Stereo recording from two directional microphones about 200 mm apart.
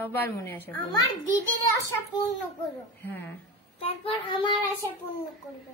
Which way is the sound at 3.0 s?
10° left (ahead or behind).